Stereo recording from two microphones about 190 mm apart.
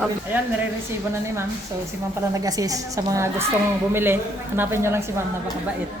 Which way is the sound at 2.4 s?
20° right (ahead or behind).